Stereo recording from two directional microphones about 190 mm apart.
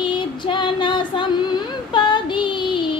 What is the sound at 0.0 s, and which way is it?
Female singing, 25° left (ahead or behind).